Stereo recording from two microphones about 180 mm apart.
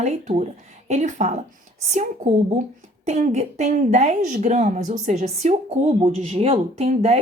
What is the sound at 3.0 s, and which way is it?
Speech, 40° right (ahead or behind).